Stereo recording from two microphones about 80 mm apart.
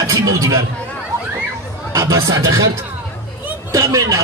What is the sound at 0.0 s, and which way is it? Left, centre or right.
Speech, right.